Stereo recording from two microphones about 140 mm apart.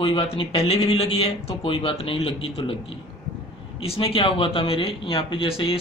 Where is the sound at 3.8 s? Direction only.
45° left (ahead or behind).